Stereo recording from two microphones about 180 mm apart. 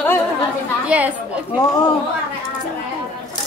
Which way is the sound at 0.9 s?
10° right (ahead or behind).